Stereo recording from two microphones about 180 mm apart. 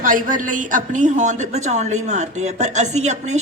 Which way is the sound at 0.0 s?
45° right (ahead or behind).